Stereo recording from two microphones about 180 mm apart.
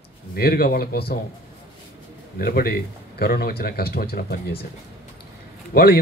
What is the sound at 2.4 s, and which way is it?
Speech, 60° left (ahead or behind).